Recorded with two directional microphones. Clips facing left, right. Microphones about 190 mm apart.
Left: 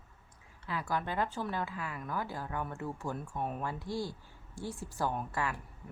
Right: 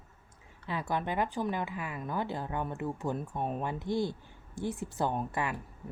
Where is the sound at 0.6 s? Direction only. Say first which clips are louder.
Right 2 dB; 20° right (ahead or behind).